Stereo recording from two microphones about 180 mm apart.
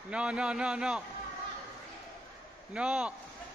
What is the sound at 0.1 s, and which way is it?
Speech, 5° right (ahead or behind).